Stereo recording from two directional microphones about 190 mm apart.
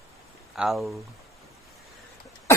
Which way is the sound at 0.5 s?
Centre (ahead or behind).